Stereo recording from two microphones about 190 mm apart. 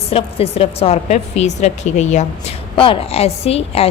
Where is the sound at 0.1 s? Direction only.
30° left (ahead or behind).